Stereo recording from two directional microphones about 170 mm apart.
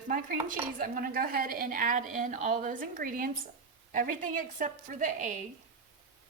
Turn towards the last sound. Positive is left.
turn(degrees=-50)  # may be behind; listen again after turning